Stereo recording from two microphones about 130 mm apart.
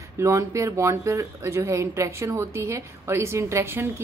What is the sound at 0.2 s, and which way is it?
Speech, 25° right (ahead or behind).